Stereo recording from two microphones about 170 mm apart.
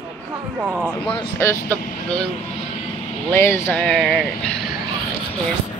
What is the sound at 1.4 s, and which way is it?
Speech, 15° left (ahead or behind).